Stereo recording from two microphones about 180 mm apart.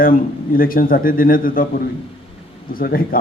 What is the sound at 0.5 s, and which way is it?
A man's voice, 55° left (ahead or behind).